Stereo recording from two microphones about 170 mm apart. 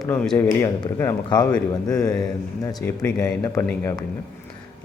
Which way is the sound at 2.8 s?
15° left (ahead or behind).